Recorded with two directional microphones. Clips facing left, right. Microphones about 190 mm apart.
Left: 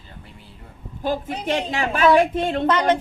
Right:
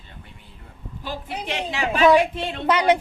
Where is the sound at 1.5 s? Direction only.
45° left (ahead or behind).